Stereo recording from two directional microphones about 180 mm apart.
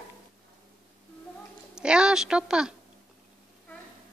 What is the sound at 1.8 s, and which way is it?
Speech, 5° right (ahead or behind).